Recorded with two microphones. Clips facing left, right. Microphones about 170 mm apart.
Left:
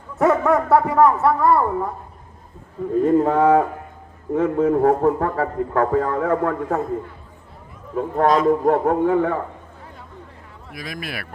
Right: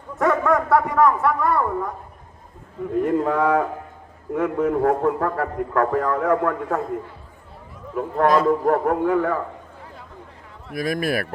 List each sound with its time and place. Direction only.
0.2 s speech: 25° left (ahead or behind)
3.0 s speech: 30° left (ahead or behind)
7.9 s speech: 25° left (ahead or behind)
10.8 s speech: 50° right (ahead or behind)